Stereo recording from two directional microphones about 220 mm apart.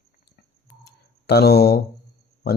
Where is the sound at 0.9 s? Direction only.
45° left (ahead or behind).